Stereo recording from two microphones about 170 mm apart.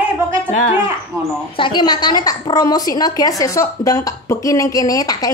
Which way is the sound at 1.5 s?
30° left (ahead or behind).